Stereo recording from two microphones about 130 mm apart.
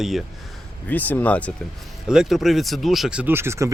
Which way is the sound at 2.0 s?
5° right (ahead or behind).